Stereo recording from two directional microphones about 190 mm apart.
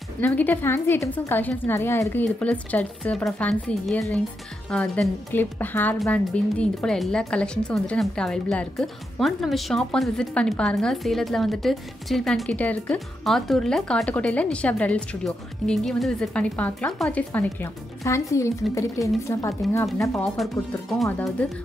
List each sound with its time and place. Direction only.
0.2 s a woman's voice: 10° left (ahead or behind)
21.0 s a woman's voice: centre (ahead or behind)